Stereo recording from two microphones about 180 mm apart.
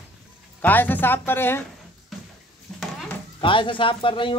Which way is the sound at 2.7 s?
5° left (ahead or behind).